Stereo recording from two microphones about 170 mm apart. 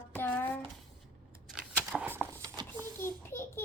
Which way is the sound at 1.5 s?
10° right (ahead or behind).